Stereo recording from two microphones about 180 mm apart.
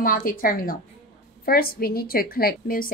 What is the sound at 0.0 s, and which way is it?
A woman's voice, 50° left (ahead or behind).